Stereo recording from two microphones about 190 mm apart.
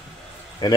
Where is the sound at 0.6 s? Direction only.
25° left (ahead or behind).